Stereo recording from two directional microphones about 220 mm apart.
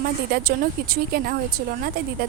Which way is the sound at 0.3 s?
45° right (ahead or behind).